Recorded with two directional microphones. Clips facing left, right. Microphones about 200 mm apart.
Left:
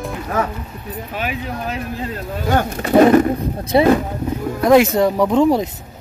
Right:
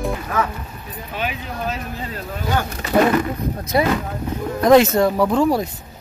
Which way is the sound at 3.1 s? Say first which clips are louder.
Left 6 dB; 30° left (ahead or behind).